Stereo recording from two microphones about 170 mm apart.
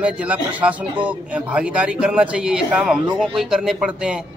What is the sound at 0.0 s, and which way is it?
A man's voice, 10° right (ahead or behind).